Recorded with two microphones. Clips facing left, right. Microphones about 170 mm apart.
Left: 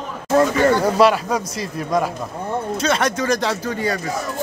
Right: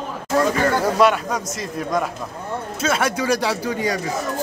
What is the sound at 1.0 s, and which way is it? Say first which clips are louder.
Speech: left 2 dB; centre (ahead or behind).